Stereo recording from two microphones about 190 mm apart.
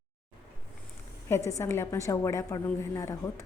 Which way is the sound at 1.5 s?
15° left (ahead or behind).